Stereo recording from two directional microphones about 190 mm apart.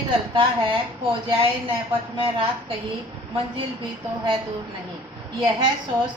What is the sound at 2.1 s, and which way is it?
Speech, 25° right (ahead or behind).